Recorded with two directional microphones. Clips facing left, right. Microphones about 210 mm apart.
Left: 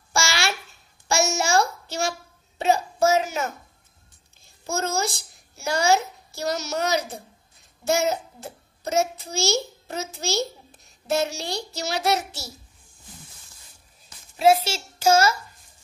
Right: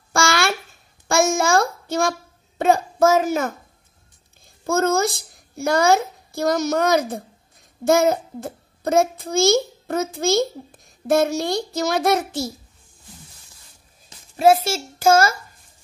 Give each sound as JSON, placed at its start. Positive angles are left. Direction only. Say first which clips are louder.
{"t": 0.1, "sound": "a sound", "louder": "right 6 dB", "side_deg": -55}
{"t": 1.0, "sound": "child singing", "louder": "right 5 dB", "side_deg": -55}
{"t": 2.6, "sound": "a child's voice", "louder": "right 4 dB", "side_deg": -50}
{"t": 4.6, "sound": "a child's voice", "louder": "right 7 dB", "side_deg": -55}
{"t": 14.3, "sound": "a child's voice", "louder": "right 3 dB", "side_deg": -50}